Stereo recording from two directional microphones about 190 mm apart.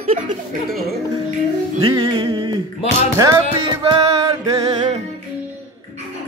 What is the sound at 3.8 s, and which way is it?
Music, 20° right (ahead or behind).